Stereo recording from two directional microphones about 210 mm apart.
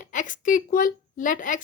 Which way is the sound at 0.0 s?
35° left (ahead or behind).